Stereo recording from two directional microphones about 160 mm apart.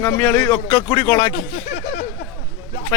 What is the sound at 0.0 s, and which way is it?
Speech, 15° left (ahead or behind).